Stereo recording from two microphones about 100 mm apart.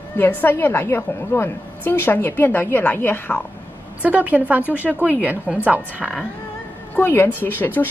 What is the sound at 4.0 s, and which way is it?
A woman's voice, 15° right (ahead or behind).